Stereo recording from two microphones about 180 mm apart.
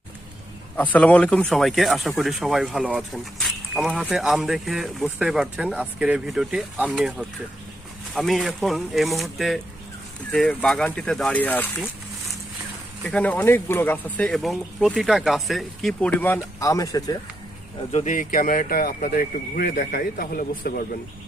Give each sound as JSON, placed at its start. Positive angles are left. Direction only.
{"t": 0.8, "sound": "speech", "side_deg": 10}
{"t": 13.1, "sound": "speech", "side_deg": 5}
{"t": 17.9, "sound": "speech", "side_deg": 45}